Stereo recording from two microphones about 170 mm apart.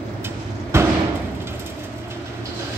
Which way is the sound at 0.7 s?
15° right (ahead or behind).